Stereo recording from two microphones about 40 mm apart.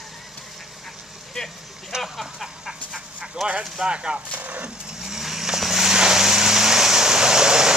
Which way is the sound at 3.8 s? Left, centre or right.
Right.